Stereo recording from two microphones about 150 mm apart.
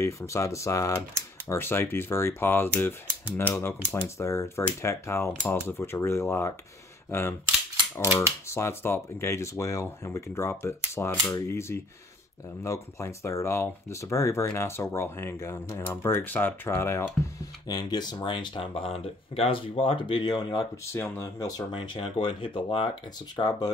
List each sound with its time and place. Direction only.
0.0 s speech: 20° left (ahead or behind)
8.5 s speech: 15° left (ahead or behind)
20.9 s speech: 15° left (ahead or behind)
21.7 s speech: 35° left (ahead or behind)